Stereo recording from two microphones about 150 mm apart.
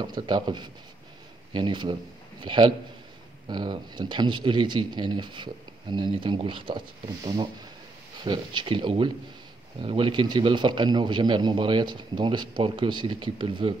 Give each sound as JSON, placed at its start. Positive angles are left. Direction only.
{"t": 0.0, "sound": "a man's voice", "side_deg": -30}
{"t": 8.2, "sound": "a man's voice", "side_deg": -30}